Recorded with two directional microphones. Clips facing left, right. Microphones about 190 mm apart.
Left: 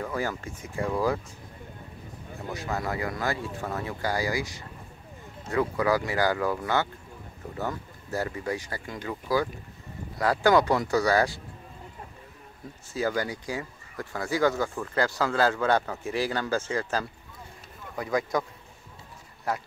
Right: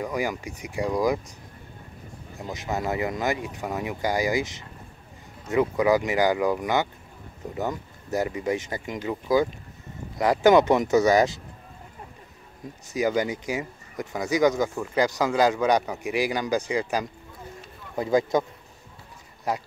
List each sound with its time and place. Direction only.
0.0 s speech: 15° right (ahead or behind)
2.4 s speech: 20° right (ahead or behind)
12.9 s speech: 20° right (ahead or behind)